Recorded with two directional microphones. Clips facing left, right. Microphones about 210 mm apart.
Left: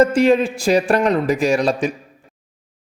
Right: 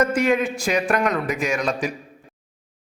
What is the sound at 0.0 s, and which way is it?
A man's voice, 30° left (ahead or behind).